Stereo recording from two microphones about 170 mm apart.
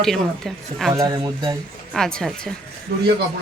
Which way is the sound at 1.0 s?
25° right (ahead or behind).